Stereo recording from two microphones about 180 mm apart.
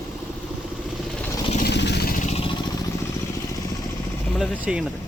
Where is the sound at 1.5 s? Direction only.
65° left (ahead or behind).